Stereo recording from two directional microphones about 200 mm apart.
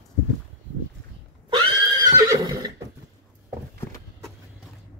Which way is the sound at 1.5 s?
20° right (ahead or behind).